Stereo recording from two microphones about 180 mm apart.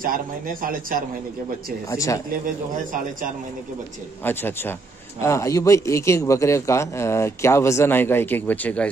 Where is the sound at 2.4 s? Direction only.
50° right (ahead or behind).